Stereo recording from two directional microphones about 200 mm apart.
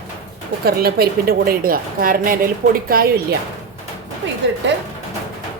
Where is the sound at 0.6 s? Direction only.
50° right (ahead or behind).